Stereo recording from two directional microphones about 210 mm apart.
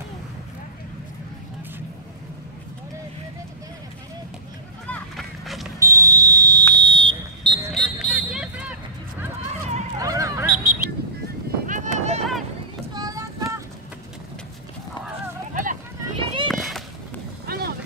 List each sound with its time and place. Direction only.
4.8 s run: 5° left (ahead or behind)
5.8 s smoke detector: 15° right (ahead or behind)
7.7 s vehicle: centre (ahead or behind)
9.9 s honk: 15° right (ahead or behind)
11.6 s clip-clop: 35° right (ahead or behind)
12.9 s child singing: 15° right (ahead or behind)
15.5 s vehicle: 40° right (ahead or behind)
16.2 s run: 25° right (ahead or behind)
16.4 s a sound: centre (ahead or behind)
17.5 s vehicle: 50° right (ahead or behind)